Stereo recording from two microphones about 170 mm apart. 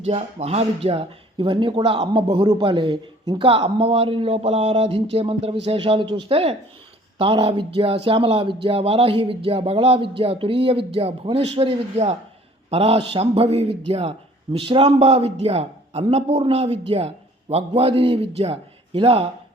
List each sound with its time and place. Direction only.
0.0 s speech: 40° right (ahead or behind)